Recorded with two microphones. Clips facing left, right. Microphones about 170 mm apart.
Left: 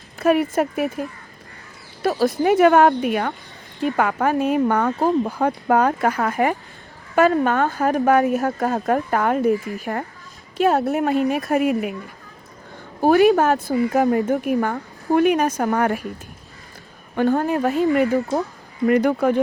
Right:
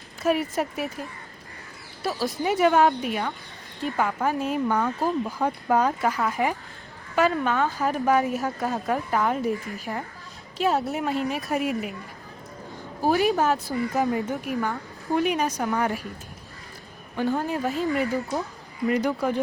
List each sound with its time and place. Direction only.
0.2 s speech: 55° left (ahead or behind)
2.0 s speech: 55° left (ahead or behind)
3.8 s speech: 70° left (ahead or behind)
7.2 s speech: 50° left (ahead or behind)
13.0 s speech: 60° left (ahead or behind)
17.2 s speech: 60° left (ahead or behind)